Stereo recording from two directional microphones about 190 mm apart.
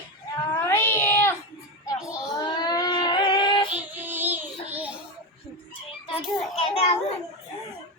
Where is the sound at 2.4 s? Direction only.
20° left (ahead or behind).